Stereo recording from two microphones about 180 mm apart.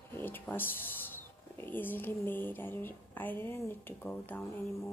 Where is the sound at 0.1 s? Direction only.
10° left (ahead or behind).